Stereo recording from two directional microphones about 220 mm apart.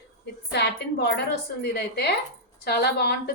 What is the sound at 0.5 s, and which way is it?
A woman's voice, 50° left (ahead or behind).